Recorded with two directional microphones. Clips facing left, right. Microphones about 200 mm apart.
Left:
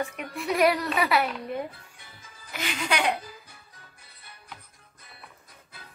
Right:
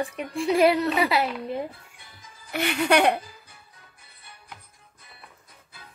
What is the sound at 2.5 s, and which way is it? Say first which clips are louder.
Speech: right 8 dB; 60° right (ahead or behind).